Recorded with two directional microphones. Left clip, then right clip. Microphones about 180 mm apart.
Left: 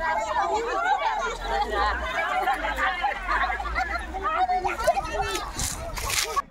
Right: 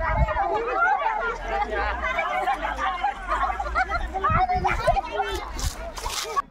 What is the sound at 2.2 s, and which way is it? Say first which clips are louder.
Chatter: left 2 dB; 60° right (ahead or behind).